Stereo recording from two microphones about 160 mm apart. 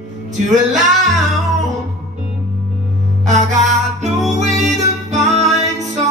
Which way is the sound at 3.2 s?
50° right (ahead or behind).